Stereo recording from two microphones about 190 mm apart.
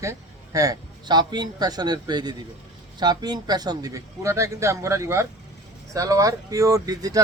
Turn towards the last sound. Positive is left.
turn(degrees=-20)  # may be behind; listen again after turning